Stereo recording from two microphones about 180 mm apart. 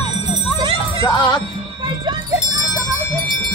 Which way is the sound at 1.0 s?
20° left (ahead or behind).